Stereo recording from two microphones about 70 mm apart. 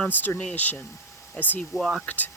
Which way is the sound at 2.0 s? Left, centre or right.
Left.